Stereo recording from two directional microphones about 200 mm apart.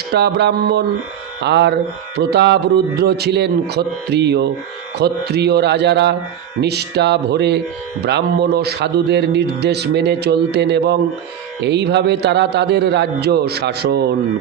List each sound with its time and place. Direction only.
0.1 s speech: 55° right (ahead or behind)